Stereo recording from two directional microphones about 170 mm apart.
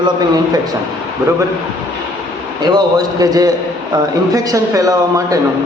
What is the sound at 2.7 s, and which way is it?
Speech, 20° right (ahead or behind).